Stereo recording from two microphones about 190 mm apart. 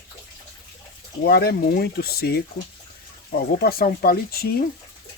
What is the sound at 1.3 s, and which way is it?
Speech, 55° left (ahead or behind).